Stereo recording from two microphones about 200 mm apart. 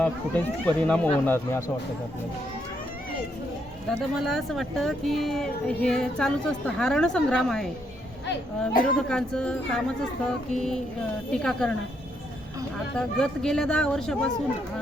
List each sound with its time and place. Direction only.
0.0 s speech: 5° left (ahead or behind)
3.8 s speech: centre (ahead or behind)
8.3 s speech: 45° left (ahead or behind)
9.0 s speech: 5° left (ahead or behind)
13.0 s speech: 5° left (ahead or behind)